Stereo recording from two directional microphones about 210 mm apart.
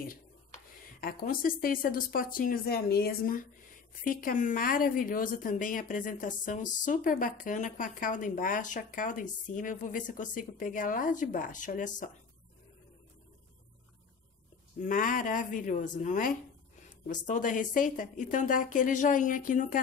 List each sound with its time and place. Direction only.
1.0 s a woman's voice: 45° left (ahead or behind)
14.8 s a woman's voice: 40° left (ahead or behind)